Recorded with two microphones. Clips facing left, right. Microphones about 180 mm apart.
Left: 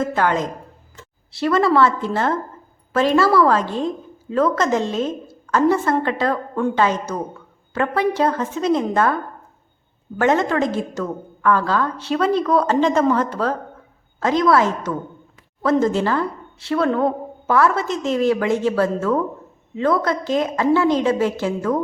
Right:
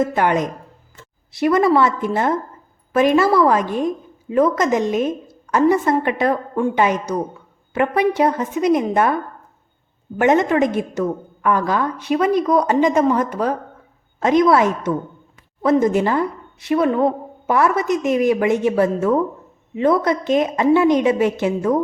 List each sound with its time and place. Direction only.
0.0 s a woman's voice: 20° right (ahead or behind)
10.2 s a woman's voice: 20° right (ahead or behind)